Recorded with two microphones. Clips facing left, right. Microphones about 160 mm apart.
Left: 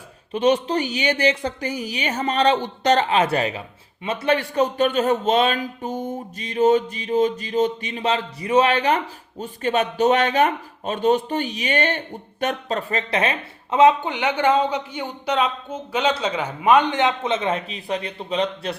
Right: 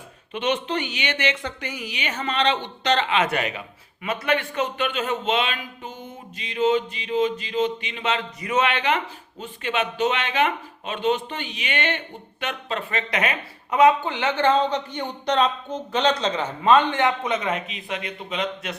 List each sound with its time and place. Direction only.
0.3 s a man's voice: 35° left (ahead or behind)